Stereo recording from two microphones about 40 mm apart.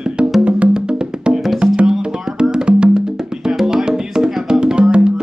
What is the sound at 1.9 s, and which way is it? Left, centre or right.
Music, centre.